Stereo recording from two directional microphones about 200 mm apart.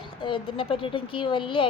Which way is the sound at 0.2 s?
25° left (ahead or behind).